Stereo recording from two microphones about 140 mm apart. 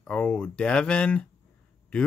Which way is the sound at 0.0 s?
10° left (ahead or behind).